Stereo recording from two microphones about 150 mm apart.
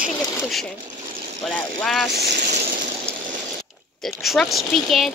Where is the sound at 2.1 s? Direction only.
90° right.